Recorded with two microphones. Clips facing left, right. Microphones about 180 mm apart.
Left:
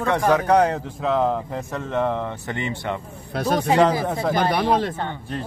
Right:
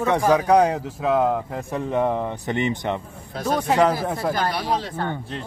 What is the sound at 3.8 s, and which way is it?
Speech, 5° right (ahead or behind).